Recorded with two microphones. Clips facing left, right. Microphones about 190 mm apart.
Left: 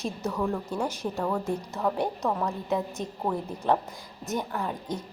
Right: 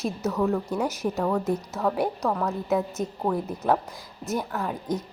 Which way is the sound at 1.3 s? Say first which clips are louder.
Right 4 dB; 10° left (ahead or behind).